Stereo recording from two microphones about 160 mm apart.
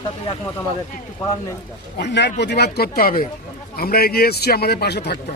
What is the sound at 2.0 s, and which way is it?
A man's voice, 90° left.